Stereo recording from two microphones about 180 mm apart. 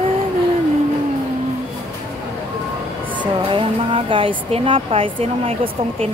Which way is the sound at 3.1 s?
30° right (ahead or behind).